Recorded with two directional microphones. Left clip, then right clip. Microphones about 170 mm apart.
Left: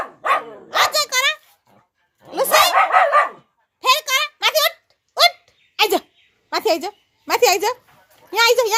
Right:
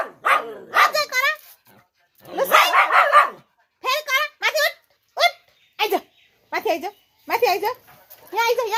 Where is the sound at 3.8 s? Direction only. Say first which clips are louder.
Left 4 dB; 15° left (ahead or behind).